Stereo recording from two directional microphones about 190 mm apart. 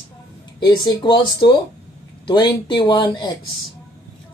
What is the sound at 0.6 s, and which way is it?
Speech, 25° left (ahead or behind).